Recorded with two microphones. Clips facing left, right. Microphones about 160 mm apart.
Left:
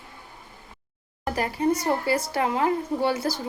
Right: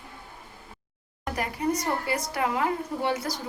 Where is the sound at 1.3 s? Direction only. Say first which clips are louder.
Left 4 dB; 30° left (ahead or behind).